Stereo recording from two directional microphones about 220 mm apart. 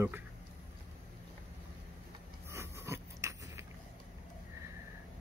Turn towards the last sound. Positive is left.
turn(degrees=-10)  # may be behind; listen again after turning